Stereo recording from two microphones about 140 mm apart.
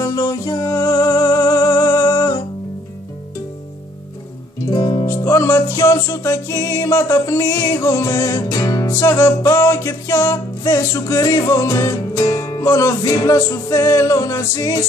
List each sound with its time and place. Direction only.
0.0 s music: 25° left (ahead or behind)
4.6 s music: 30° left (ahead or behind)